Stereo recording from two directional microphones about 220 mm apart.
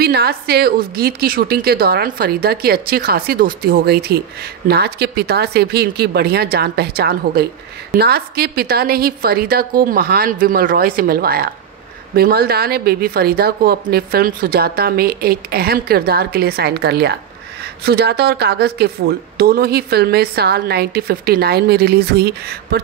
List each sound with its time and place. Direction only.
0.0 s a woman's voice: 45° right (ahead or behind)